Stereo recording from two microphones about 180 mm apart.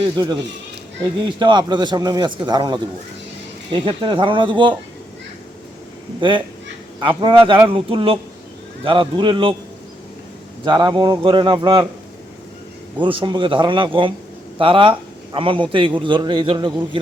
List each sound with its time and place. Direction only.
1.2 s a man's voice: 25° right (ahead or behind)
6.1 s a man's voice: 25° right (ahead or behind)
10.6 s a man's voice: 25° right (ahead or behind)
13.0 s a man's voice: 30° right (ahead or behind)